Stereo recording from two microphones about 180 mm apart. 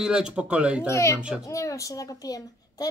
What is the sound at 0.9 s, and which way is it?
Speech, 15° left (ahead or behind).